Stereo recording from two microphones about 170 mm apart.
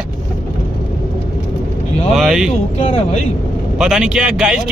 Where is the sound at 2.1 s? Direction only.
Centre (ahead or behind).